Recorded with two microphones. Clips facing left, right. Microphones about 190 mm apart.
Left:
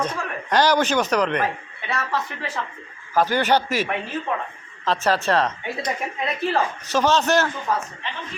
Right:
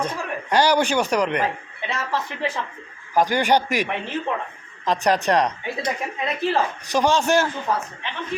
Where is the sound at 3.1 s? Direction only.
15° right (ahead or behind).